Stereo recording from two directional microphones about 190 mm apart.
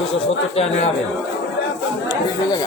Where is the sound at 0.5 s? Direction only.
30° left (ahead or behind).